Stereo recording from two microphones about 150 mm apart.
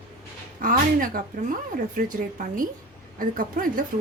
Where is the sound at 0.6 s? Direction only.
65° right (ahead or behind).